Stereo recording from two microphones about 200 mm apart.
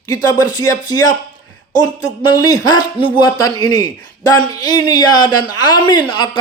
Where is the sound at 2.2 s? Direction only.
20° left (ahead or behind).